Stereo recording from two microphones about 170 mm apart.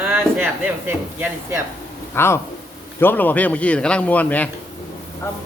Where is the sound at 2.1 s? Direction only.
15° left (ahead or behind).